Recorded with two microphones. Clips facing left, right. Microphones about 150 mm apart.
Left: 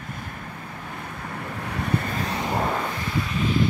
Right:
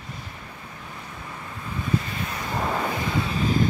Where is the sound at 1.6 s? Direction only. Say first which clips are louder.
Even; 70° left (ahead or behind).